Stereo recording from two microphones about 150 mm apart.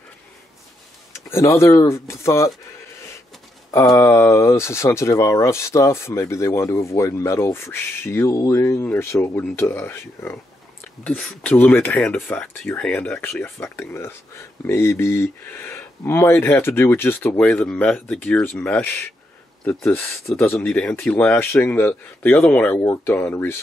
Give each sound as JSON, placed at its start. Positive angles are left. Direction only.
{"t": 1.1, "sound": "speech", "side_deg": 20}
{"t": 3.7, "sound": "speech", "side_deg": 20}